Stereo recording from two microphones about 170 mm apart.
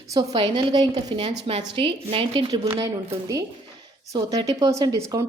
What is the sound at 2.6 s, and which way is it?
Speech, 20° right (ahead or behind).